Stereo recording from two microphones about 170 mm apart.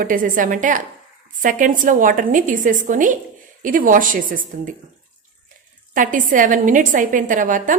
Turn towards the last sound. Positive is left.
turn(degrees=-50)  # may be behind; listen again after turning